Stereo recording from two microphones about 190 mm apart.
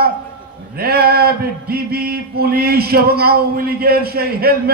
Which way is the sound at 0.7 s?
55° right (ahead or behind).